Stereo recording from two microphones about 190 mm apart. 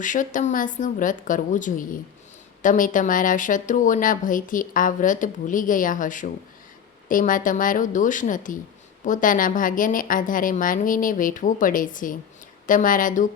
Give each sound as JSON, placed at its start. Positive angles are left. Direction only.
{"t": 0.0, "sound": "speech", "side_deg": 45}